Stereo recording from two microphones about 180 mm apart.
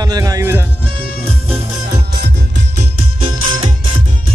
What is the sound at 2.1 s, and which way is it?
Music, 65° right (ahead or behind).